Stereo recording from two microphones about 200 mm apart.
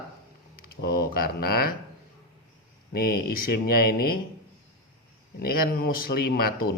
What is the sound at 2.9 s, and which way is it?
Speech, 50° left (ahead or behind).